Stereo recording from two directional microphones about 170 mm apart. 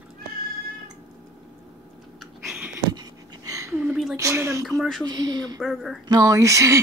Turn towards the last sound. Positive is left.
turn(degrees=-15)  # may be behind; listen again after turning